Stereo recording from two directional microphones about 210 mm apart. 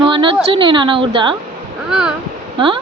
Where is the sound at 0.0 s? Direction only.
25° right (ahead or behind).